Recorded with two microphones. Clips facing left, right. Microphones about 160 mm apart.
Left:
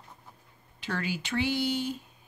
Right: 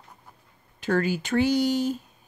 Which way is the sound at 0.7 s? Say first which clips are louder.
Right 9 dB; 45° right (ahead or behind).